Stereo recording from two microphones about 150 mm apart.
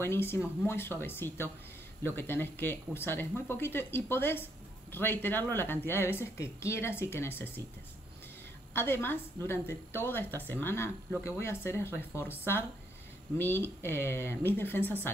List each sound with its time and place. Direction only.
0.0 s speech: 15° left (ahead or behind)
8.7 s speech: 15° left (ahead or behind)
13.4 s speech: 15° left (ahead or behind)